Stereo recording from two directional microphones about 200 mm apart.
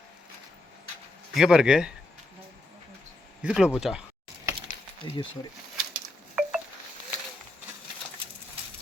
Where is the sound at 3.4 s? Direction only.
5° right (ahead or behind).